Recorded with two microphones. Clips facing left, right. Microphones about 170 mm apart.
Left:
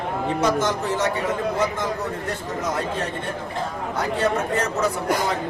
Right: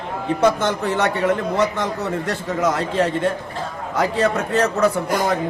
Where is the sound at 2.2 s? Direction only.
90° right; by 4.9 s 70° right (ahead or behind).